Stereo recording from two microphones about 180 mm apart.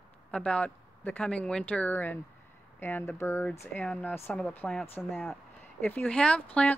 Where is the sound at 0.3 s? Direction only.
5° left (ahead or behind).